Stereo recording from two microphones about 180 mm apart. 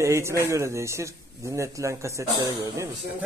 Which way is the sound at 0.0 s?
15° right (ahead or behind).